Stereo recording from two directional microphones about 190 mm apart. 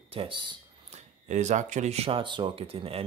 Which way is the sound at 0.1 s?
25° right (ahead or behind).